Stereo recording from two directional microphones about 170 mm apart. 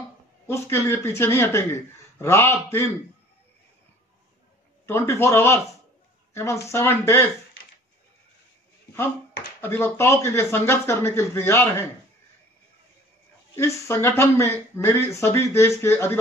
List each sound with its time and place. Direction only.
0.5 s speech: 15° left (ahead or behind)
4.8 s speech: 15° left (ahead or behind)
9.6 s speech: 15° left (ahead or behind)
13.6 s speech: 15° left (ahead or behind)